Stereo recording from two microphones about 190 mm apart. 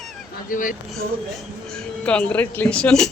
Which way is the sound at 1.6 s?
5° left (ahead or behind).